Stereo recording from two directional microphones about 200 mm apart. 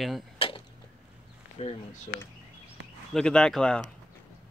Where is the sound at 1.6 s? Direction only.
30° left (ahead or behind).